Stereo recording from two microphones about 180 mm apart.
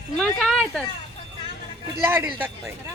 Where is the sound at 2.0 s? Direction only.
10° right (ahead or behind).